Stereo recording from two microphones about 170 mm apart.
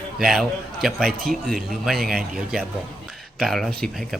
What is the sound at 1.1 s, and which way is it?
Speech, 60° right (ahead or behind).